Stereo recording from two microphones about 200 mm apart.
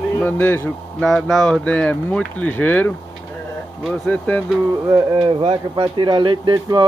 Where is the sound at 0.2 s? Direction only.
10° left (ahead or behind).